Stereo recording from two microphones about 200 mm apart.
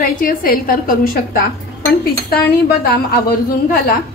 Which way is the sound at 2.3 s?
50° left (ahead or behind).